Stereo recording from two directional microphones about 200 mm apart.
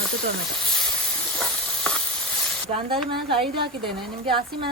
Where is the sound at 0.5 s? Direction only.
Centre (ahead or behind).